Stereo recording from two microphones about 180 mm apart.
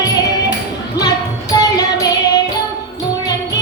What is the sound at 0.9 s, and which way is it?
Music, 20° left (ahead or behind).